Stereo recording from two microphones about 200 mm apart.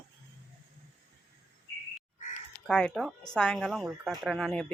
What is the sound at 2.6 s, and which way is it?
A woman's voice, 5° left (ahead or behind).